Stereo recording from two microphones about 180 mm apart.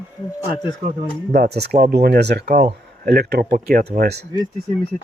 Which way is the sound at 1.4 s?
65° right (ahead or behind).